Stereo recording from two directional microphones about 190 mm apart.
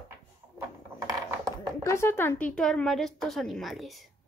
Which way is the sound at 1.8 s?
15° left (ahead or behind).